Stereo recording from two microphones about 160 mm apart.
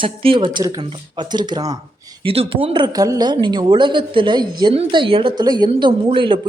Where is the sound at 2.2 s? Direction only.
35° right (ahead or behind).